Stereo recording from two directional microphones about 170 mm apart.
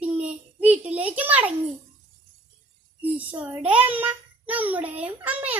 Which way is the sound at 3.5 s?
10° right (ahead or behind).